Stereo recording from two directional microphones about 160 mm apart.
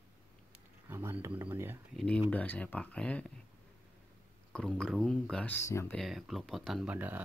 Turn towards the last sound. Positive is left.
turn(degrees=-10)  # may be behind; listen again after turning